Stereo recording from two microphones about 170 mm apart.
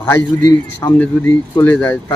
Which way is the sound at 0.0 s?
10° left (ahead or behind).